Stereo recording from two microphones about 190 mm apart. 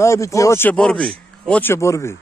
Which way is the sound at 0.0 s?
15° left (ahead or behind).